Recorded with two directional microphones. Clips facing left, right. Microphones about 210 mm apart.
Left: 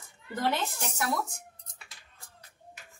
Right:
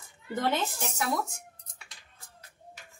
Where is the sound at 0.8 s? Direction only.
Centre (ahead or behind).